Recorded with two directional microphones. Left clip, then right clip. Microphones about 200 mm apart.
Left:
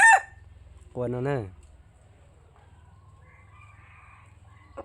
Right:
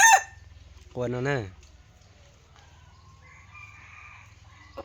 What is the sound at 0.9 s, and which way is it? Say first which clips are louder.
Speech: right 1 dB; 5° left (ahead or behind).